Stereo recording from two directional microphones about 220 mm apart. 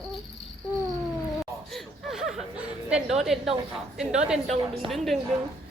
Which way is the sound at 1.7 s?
Centre (ahead or behind).